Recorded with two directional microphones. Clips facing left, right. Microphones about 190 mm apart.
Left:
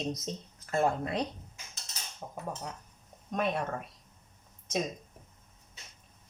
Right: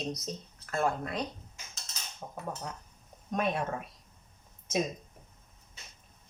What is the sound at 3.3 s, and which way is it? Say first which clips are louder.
Speech: even; centre (ahead or behind).